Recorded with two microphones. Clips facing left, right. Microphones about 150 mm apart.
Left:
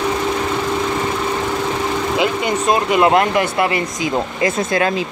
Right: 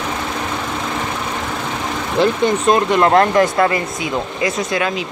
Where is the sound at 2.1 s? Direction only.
5° left (ahead or behind).